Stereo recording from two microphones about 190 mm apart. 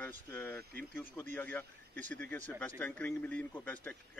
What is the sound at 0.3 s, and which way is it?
A man's voice, 10° left (ahead or behind).